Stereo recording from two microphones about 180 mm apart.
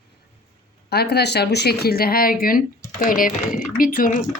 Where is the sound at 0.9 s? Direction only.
60° left (ahead or behind).